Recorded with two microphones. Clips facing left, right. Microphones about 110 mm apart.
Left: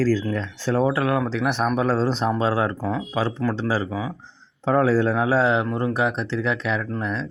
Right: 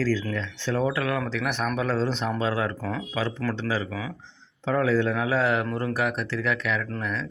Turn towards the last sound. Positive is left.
turn(degrees=30)  # may be behind; listen again after turning